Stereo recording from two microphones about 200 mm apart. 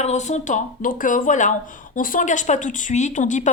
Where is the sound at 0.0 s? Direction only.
35° left (ahead or behind).